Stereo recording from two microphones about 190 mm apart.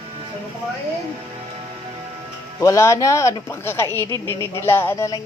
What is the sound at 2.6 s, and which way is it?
Speech, 15° left (ahead or behind).